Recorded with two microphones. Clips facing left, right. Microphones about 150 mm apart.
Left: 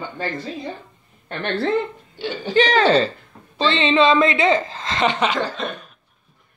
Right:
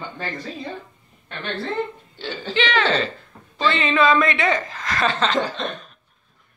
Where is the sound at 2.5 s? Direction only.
40° left (ahead or behind).